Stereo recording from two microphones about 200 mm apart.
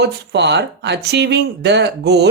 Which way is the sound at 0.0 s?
60° right (ahead or behind).